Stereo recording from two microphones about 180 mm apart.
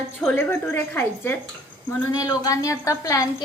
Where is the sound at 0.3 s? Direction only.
10° left (ahead or behind).